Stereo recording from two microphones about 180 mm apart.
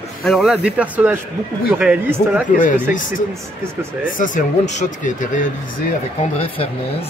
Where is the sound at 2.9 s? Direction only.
45° left (ahead or behind).